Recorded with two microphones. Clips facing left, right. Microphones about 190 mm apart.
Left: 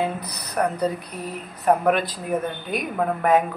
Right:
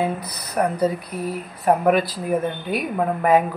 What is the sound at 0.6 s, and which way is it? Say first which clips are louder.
Speech: right 2 dB; 10° right (ahead or behind).